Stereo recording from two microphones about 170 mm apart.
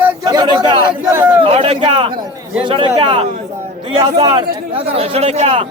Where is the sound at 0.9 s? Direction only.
10° right (ahead or behind).